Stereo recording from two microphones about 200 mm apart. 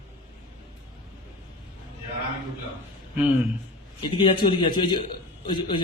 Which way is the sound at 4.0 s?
25° left (ahead or behind).